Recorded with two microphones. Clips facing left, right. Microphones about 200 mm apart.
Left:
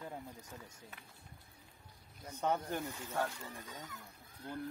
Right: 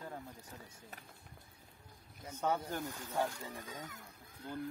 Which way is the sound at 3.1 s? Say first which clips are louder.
Right 2 dB; 15° right (ahead or behind).